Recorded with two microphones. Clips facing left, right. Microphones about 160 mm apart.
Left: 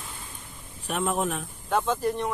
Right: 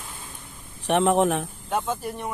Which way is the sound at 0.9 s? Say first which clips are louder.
Right 7 dB; 75° right (ahead or behind).